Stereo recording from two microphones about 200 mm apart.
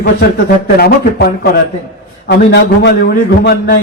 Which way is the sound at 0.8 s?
50° left (ahead or behind).